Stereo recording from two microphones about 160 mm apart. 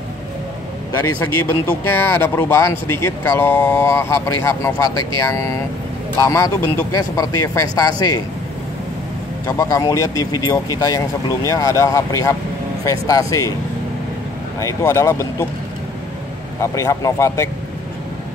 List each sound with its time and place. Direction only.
1.4 s speech: 15° left (ahead or behind)
9.5 s speech: 20° left (ahead or behind)
14.6 s speech: 20° left (ahead or behind)
16.6 s speech: 20° left (ahead or behind)